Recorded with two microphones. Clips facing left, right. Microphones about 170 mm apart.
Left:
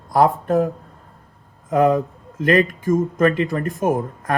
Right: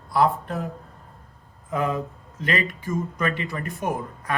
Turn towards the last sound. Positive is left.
turn(degrees=45)  # may be behind; listen again after turning